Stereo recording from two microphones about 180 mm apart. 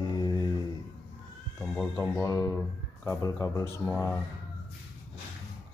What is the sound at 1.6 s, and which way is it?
Speech, 5° left (ahead or behind).